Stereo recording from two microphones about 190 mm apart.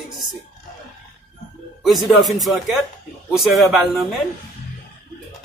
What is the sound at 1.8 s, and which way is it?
Speech, centre (ahead or behind).